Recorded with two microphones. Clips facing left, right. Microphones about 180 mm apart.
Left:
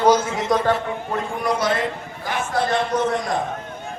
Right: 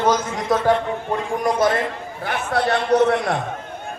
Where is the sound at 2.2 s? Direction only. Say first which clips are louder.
Right 1 dB; 65° right (ahead or behind).